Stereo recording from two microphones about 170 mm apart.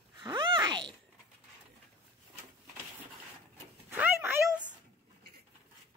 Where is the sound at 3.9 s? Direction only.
10° right (ahead or behind).